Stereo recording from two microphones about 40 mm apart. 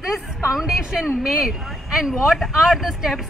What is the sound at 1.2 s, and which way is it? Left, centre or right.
Speech, centre.